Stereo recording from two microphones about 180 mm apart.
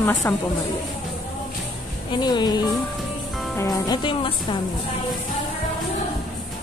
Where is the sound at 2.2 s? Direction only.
25° left (ahead or behind).